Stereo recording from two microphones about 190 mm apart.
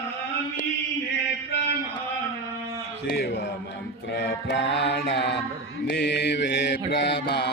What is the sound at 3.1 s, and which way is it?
Mantra, 60° left (ahead or behind).